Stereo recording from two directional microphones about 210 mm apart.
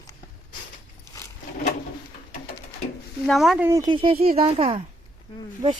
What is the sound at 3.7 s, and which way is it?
Speech, 20° right (ahead or behind).